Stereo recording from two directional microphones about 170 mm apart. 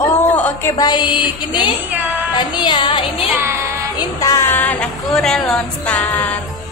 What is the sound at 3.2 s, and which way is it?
Speech, 15° right (ahead or behind).